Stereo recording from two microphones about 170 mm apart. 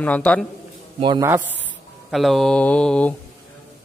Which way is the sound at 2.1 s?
Centre (ahead or behind).